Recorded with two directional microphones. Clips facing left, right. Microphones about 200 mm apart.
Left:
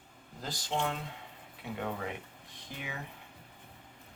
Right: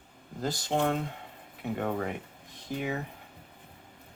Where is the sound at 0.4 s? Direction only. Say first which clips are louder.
Right 6 dB; 50° right (ahead or behind).